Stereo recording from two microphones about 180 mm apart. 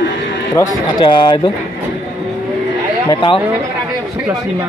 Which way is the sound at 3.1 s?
30° left (ahead or behind).